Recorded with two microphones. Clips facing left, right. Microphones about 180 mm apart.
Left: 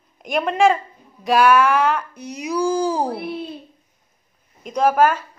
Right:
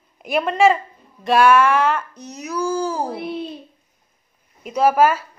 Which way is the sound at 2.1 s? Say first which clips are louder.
Left 3 dB; 10° left (ahead or behind).